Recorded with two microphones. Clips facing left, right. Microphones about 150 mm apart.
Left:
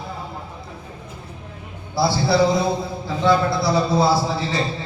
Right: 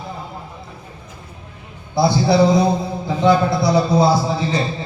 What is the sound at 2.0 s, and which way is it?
A man's voice, 20° right (ahead or behind).